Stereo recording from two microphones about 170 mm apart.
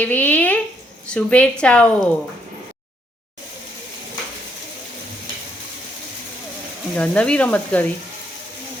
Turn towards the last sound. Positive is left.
turn(degrees=10)  # may be behind; listen again after turning